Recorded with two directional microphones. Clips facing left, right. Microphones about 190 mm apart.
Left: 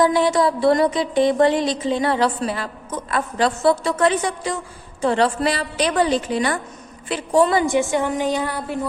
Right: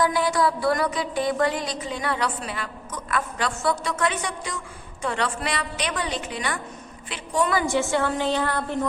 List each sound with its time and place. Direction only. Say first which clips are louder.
0.0 s a woman's voice: left 5 dB; 25° left (ahead or behind)